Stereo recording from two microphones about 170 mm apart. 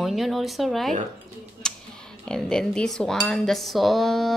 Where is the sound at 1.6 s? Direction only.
5° left (ahead or behind).